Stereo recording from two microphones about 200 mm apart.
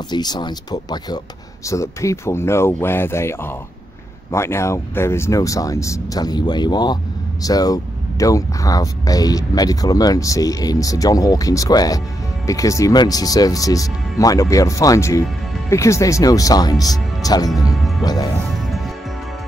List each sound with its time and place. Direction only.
0.1 s speech: 20° left (ahead or behind)